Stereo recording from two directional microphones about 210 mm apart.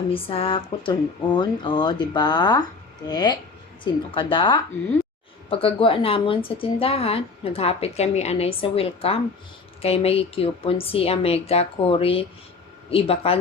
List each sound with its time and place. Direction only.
0.1 s speech: 25° left (ahead or behind)